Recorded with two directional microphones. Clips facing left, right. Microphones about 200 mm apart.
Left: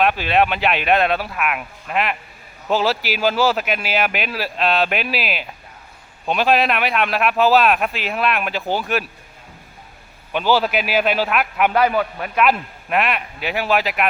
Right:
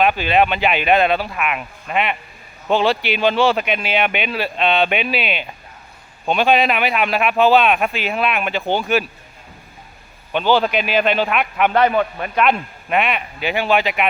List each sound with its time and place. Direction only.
0.0 s a man's voice: centre (ahead or behind)
10.3 s a man's voice: 5° left (ahead or behind)